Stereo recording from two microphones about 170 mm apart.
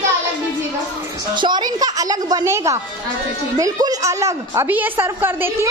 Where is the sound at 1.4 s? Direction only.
25° right (ahead or behind).